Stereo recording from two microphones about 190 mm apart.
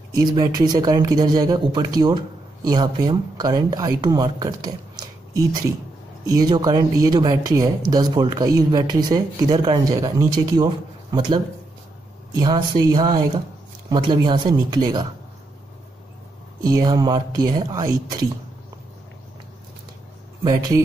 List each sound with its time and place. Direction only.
0.1 s speech: 20° right (ahead or behind)
16.6 s speech: 20° right (ahead or behind)
20.4 s speech: 20° right (ahead or behind)